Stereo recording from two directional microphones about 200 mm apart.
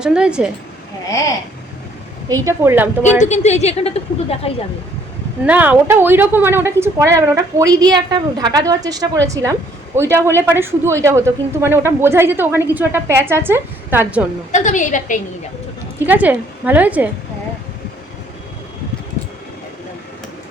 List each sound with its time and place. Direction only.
0.0 s a woman's voice: 5° right (ahead or behind)
2.3 s a woman's voice: 15° right (ahead or behind)
3.2 s a woman's voice: 35° left (ahead or behind)
5.5 s a woman's voice: 10° right (ahead or behind)
14.5 s a woman's voice: 35° left (ahead or behind)
16.0 s a woman's voice: 10° right (ahead or behind)